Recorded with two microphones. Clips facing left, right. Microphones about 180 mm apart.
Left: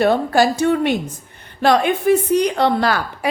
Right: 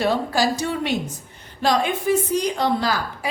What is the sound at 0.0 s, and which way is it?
A woman's voice, 55° left (ahead or behind).